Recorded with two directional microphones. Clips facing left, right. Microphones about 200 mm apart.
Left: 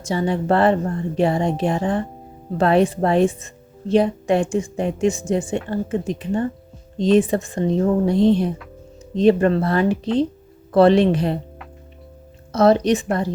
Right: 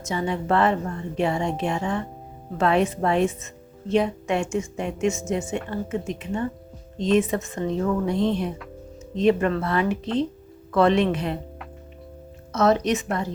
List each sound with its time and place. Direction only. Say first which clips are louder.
0.0 s speech: left 5 dB; 35° left (ahead or behind)
12.5 s speech: left 5 dB; 35° left (ahead or behind)